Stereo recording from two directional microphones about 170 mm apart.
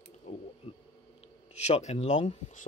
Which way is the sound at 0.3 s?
45° left (ahead or behind).